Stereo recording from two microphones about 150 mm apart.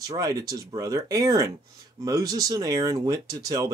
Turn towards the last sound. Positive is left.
turn(degrees=-25)  # may be behind; listen again after turning